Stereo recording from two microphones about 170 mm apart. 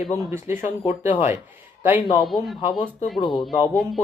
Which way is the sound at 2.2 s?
Centre (ahead or behind).